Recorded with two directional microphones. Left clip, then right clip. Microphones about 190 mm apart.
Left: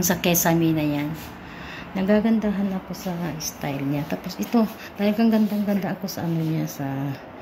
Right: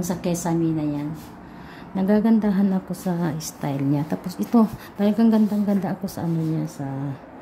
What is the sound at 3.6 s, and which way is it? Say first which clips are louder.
A woman's voice: right 3 dB; 20° right (ahead or behind).